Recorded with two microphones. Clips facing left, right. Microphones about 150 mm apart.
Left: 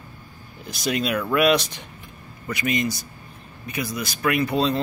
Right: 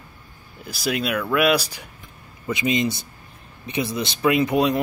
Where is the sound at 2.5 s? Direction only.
20° right (ahead or behind).